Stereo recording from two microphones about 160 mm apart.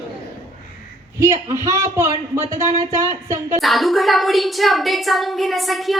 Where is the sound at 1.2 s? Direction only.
20° right (ahead or behind).